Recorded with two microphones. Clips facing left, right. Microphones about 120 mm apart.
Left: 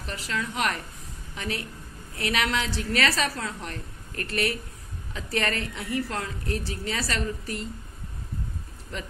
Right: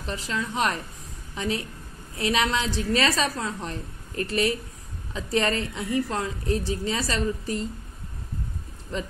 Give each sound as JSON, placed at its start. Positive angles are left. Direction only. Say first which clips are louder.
{"t": 0.0, "sound": "a woman's voice", "louder": "right 2 dB", "side_deg": -25}